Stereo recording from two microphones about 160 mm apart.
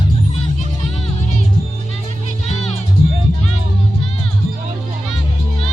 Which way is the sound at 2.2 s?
45° left (ahead or behind).